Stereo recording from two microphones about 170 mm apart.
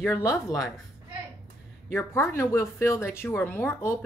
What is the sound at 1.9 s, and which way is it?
Speech, 15° left (ahead or behind).